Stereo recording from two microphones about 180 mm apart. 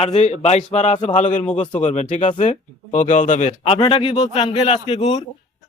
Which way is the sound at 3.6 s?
30° left (ahead or behind).